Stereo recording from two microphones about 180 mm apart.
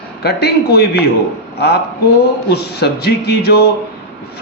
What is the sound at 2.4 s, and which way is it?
A man's voice, 65° left (ahead or behind).